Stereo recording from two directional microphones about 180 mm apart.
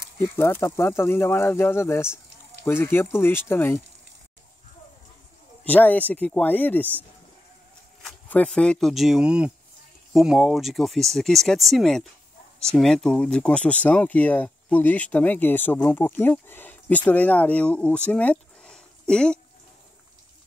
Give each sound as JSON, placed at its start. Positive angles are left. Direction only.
{"t": 0.4, "sound": "speech", "side_deg": 15}
{"t": 5.6, "sound": "speech", "side_deg": 10}
{"t": 8.1, "sound": "speech", "side_deg": 5}